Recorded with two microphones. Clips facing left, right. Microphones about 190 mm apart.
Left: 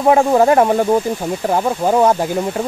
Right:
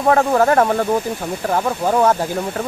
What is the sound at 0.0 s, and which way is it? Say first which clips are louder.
Speech: left 3 dB; 15° left (ahead or behind).